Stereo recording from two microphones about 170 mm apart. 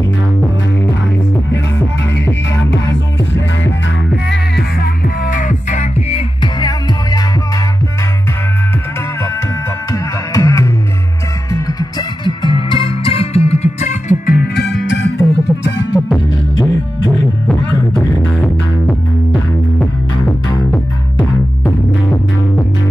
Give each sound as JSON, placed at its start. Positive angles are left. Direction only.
{"t": 2.7, "sound": "music", "side_deg": 90}
{"t": 5.0, "sound": "music", "side_deg": 55}
{"t": 10.3, "sound": "music", "side_deg": 20}
{"t": 15.1, "sound": "music", "side_deg": 15}
{"t": 18.1, "sound": "music", "side_deg": 10}